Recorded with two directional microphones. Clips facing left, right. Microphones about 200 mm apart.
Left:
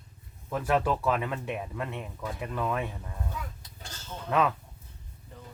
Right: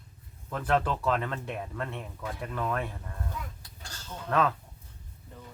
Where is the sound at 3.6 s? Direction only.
15° left (ahead or behind).